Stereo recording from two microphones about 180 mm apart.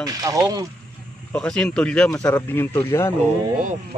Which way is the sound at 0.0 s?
20° right (ahead or behind).